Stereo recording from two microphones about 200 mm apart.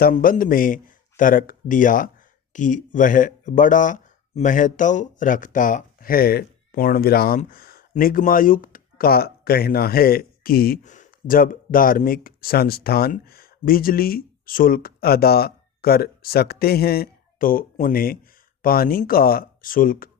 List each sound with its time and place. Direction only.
0.0 s speech: 45° left (ahead or behind)